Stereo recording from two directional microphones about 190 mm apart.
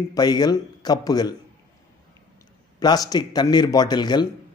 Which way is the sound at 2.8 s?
20° left (ahead or behind).